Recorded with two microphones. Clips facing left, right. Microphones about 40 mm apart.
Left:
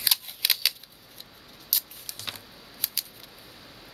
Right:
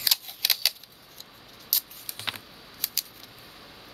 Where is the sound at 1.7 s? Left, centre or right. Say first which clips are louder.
Even; centre.